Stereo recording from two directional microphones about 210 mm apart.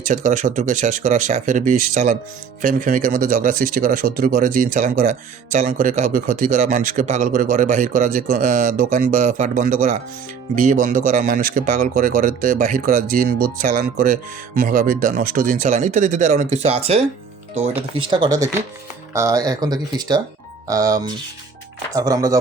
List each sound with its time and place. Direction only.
0.0 s speech: 35° right (ahead or behind)
18.1 s speech: 20° right (ahead or behind)